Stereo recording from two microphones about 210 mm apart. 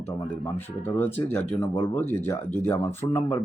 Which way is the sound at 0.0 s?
10° left (ahead or behind).